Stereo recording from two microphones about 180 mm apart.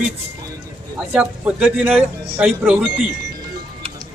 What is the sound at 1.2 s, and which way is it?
Speech, 10° right (ahead or behind).